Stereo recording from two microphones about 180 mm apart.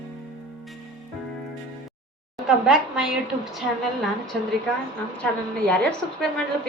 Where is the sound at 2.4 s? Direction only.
5° right (ahead or behind).